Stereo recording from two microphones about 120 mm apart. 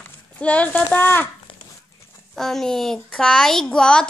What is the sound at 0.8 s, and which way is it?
Speech, 15° left (ahead or behind).